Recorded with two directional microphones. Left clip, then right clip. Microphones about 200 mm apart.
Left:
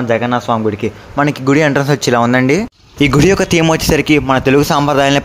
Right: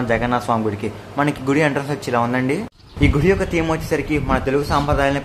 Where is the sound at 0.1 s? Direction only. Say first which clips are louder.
Left 5 dB; 25° left (ahead or behind).